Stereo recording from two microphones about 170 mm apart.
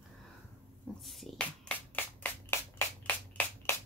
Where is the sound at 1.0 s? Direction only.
Centre (ahead or behind).